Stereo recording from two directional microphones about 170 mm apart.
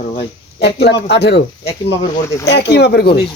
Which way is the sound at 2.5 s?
75° left (ahead or behind).